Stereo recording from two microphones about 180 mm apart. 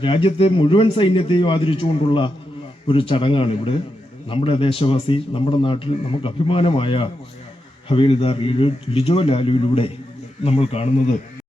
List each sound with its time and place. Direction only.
0.0 s a man's voice: 30° left (ahead or behind)